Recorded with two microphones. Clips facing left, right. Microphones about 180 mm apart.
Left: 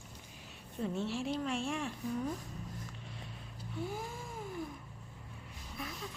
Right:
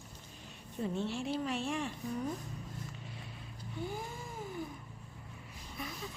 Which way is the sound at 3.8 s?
Centre (ahead or behind).